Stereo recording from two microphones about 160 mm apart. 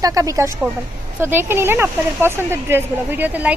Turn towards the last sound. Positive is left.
turn(degrees=-10)  # may be behind; listen again after turning